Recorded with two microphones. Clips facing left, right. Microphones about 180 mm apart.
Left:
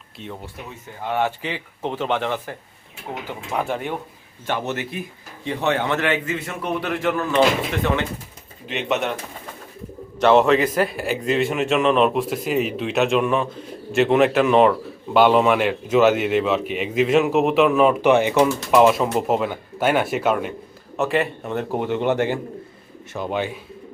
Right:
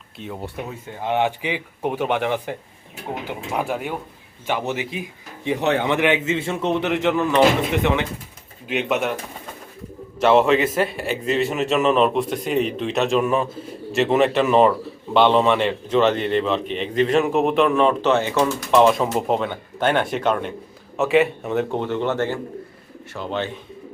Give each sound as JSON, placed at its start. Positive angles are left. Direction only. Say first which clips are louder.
{"t": 1.0, "sound": "a man's voice", "louder": "right 2 dB", "side_deg": -20}
{"t": 8.6, "sound": "a man's voice", "louder": "right 1 dB", "side_deg": -5}
{"t": 10.2, "sound": "a man's voice", "louder": "left 1 dB", "side_deg": -5}
{"t": 21.8, "sound": "speech", "louder": "left 2 dB", "side_deg": 15}